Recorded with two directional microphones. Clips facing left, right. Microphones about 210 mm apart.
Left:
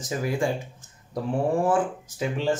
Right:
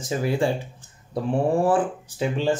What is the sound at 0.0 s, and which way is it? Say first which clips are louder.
Speech: right 3 dB; 30° right (ahead or behind).